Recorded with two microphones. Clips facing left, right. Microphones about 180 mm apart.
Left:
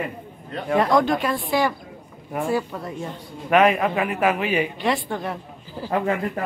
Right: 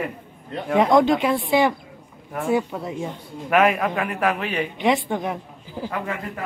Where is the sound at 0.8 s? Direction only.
20° right (ahead or behind).